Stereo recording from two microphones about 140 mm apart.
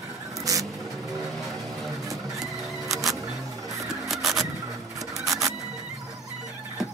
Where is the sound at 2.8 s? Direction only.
25° right (ahead or behind).